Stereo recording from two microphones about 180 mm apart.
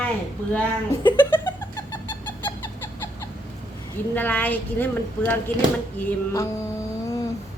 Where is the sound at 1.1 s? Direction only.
10° left (ahead or behind).